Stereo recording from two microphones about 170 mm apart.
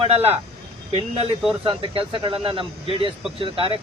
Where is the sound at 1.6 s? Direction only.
30° right (ahead or behind).